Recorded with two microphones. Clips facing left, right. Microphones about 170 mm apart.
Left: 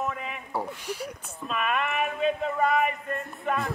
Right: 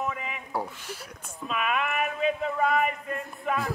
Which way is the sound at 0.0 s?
Centre (ahead or behind).